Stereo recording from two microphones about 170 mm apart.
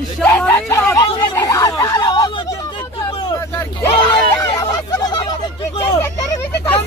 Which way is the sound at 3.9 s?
30° left (ahead or behind).